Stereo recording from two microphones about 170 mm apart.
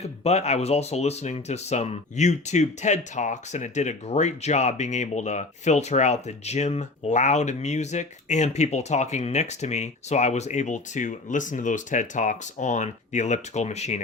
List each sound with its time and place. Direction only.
0.0 s speech: 40° left (ahead or behind)